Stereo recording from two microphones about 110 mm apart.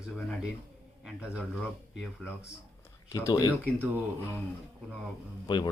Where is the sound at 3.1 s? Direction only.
30° left (ahead or behind).